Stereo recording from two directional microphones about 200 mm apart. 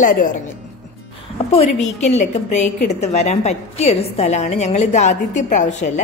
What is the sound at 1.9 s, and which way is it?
A woman's voice, 35° left (ahead or behind).